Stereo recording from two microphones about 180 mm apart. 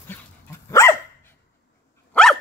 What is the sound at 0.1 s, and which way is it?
Dog, 10° left (ahead or behind).